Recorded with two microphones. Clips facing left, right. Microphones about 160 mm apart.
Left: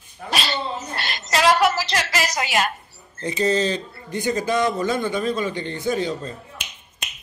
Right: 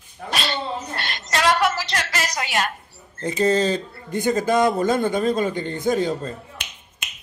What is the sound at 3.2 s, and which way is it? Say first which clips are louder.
A man's voice: right 2 dB; 50° right (ahead or behind).